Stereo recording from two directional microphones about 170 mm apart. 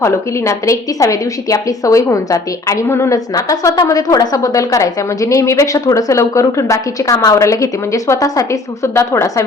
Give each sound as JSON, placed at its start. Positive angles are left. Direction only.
{"t": 0.0, "sound": "a woman's voice", "side_deg": 15}